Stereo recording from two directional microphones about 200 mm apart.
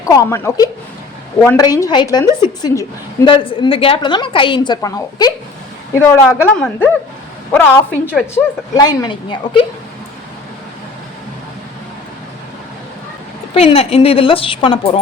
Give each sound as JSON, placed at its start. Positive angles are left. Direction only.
{"t": 0.1, "sound": "a woman's voice", "side_deg": 15}
{"t": 8.7, "sound": "a woman's voice", "side_deg": 20}
{"t": 13.5, "sound": "a woman's voice", "side_deg": 30}